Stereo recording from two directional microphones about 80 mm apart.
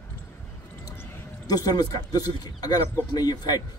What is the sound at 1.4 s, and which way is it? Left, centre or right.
Speech, left.